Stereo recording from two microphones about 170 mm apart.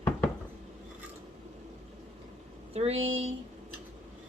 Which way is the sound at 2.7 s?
35° right (ahead or behind).